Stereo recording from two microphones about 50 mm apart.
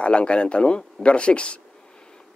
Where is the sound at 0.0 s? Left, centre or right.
Left.